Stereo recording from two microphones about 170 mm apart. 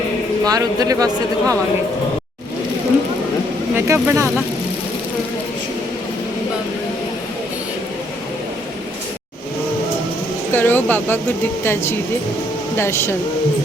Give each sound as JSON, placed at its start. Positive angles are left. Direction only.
{"t": 0.4, "sound": "speech", "side_deg": -20}
{"t": 3.8, "sound": "speech", "side_deg": -15}
{"t": 10.5, "sound": "speech", "side_deg": 10}